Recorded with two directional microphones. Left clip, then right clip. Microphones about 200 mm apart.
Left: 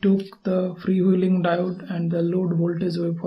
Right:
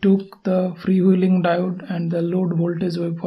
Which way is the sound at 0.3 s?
25° right (ahead or behind).